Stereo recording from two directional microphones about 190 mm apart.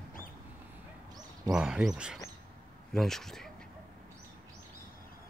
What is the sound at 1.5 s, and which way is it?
Speech, 5° right (ahead or behind).